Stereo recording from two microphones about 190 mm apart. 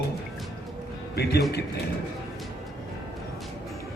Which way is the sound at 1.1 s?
60° left (ahead or behind).